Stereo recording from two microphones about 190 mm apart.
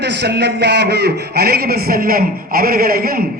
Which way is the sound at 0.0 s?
60° right (ahead or behind).